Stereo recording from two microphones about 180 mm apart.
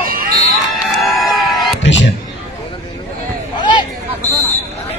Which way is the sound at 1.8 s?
90° left.